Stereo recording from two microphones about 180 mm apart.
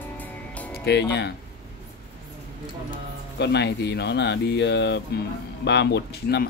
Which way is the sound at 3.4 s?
70° left (ahead or behind).